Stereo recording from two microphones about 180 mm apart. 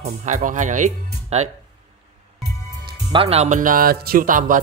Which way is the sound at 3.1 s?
30° right (ahead or behind).